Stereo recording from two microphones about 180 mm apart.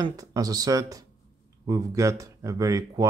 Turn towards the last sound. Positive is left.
turn(degrees=-20)  # may be behind; listen again after turning